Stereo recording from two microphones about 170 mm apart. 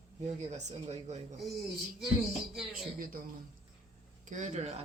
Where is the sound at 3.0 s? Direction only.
55° right (ahead or behind).